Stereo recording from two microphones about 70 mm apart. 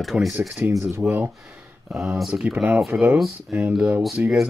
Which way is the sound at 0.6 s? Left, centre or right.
Right.